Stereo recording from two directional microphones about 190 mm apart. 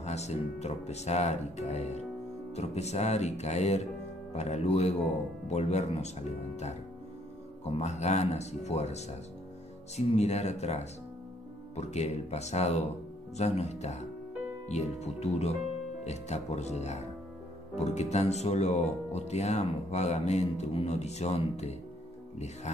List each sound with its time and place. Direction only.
0.0 s speech: 35° left (ahead or behind)
7.7 s speech: 35° left (ahead or behind)